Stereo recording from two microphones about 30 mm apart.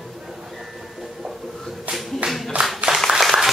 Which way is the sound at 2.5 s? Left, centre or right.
Right.